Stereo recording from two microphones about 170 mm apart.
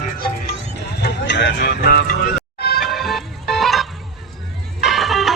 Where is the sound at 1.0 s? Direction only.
90° left; by 2.0 s 65° left (ahead or behind).